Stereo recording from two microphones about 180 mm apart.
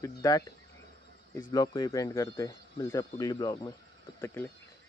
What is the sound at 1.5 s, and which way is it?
Speech, 20° left (ahead or behind).